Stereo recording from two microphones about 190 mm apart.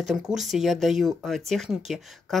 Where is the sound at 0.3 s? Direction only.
Centre (ahead or behind).